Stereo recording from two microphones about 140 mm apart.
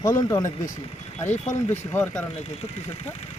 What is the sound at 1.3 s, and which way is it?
Speech, 55° left (ahead or behind).